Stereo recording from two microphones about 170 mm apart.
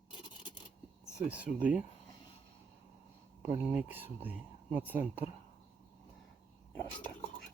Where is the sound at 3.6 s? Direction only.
10° right (ahead or behind).